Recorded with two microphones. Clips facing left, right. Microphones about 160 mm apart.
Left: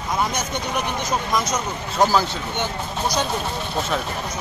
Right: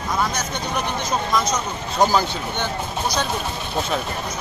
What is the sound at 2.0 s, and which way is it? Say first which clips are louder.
Speech: even; centre (ahead or behind).